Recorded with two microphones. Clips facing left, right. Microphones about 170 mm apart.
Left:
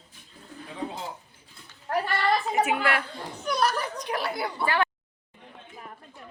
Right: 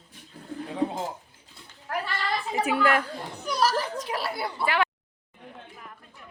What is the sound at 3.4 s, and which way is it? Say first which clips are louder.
Speech: right 1 dB; centre (ahead or behind).